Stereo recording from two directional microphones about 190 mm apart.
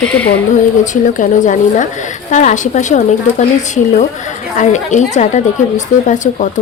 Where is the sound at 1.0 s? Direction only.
40° left (ahead or behind).